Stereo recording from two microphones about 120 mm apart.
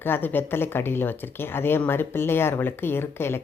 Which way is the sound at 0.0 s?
15° left (ahead or behind).